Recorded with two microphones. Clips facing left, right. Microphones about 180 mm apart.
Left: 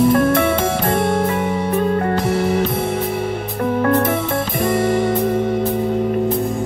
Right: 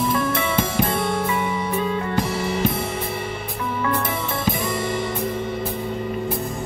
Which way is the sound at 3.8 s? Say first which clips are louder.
Left 8 dB; 50° left (ahead or behind).